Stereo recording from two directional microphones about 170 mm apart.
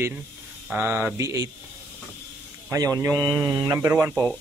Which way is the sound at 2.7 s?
20° right (ahead or behind).